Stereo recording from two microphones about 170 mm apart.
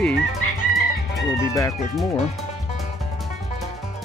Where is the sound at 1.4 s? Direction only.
20° left (ahead or behind).